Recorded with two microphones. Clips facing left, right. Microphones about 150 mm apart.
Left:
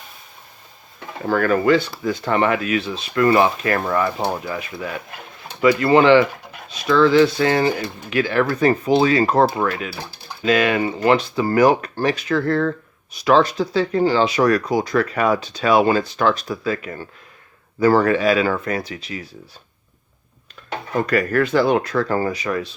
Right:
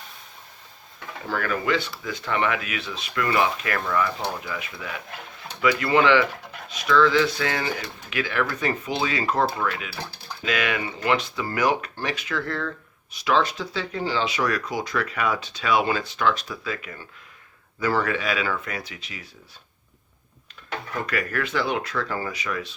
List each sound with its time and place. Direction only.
1.2 s speech: 50° left (ahead or behind)
20.9 s speech: 35° left (ahead or behind)